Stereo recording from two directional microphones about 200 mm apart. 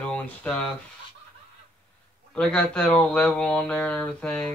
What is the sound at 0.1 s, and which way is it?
Speech, 5° left (ahead or behind).